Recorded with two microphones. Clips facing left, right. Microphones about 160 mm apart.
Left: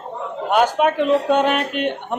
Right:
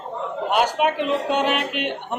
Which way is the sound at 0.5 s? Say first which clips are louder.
Left 4 dB; 45° left (ahead or behind).